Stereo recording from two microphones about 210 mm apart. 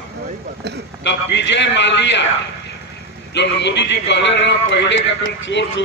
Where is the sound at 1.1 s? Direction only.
55° left (ahead or behind).